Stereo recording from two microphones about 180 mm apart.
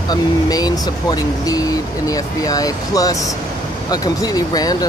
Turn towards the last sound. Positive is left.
turn(degrees=20)  # may be behind; listen again after turning